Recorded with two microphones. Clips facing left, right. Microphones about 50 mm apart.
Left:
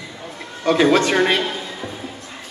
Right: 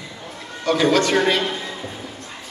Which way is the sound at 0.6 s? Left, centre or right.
Left.